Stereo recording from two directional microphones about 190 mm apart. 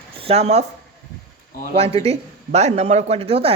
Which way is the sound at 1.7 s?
30° right (ahead or behind).